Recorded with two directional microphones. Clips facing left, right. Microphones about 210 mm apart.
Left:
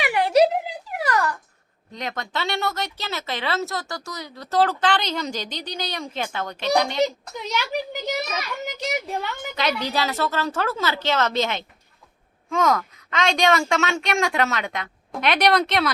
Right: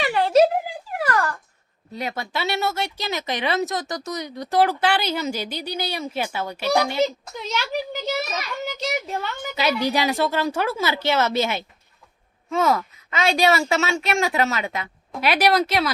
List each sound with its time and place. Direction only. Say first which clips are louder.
0.0 s a sound: right 1 dB; 15° left (ahead or behind)
1.9 s speech: right 2 dB; 10° right (ahead or behind)
7.0 s a child's voice: even; 15° left (ahead or behind)
9.6 s speech: right 3 dB; 10° right (ahead or behind)